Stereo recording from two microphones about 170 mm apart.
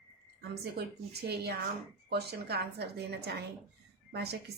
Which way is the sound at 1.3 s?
75° right (ahead or behind).